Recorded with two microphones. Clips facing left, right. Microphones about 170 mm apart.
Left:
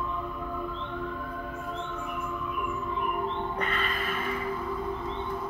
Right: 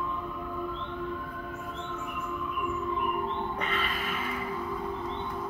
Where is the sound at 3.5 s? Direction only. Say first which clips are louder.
Left 1 dB; centre (ahead or behind).